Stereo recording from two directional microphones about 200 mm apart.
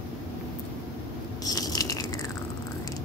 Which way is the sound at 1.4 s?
20° left (ahead or behind).